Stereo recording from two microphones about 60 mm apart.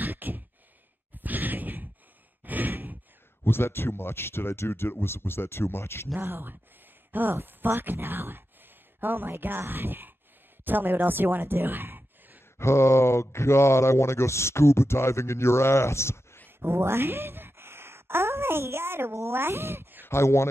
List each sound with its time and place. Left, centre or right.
0.0 s a sound: right
3.4 s speech: left
6.1 s speech: right
12.5 s speech: left
16.4 s a sound: right
19.1 s speech: right
20.1 s speech: left